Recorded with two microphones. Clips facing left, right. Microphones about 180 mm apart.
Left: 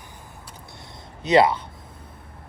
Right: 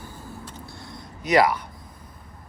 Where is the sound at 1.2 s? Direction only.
25° left (ahead or behind).